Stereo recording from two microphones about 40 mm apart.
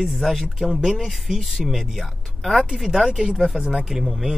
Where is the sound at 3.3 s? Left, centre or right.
Centre.